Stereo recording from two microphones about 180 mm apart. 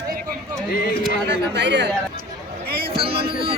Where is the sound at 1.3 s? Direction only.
75° right (ahead or behind).